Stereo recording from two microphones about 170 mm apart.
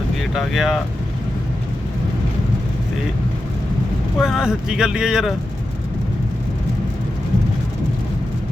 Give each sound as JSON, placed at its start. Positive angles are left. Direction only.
{"t": 0.2, "sound": "speech", "side_deg": 0}
{"t": 4.2, "sound": "speech", "side_deg": 0}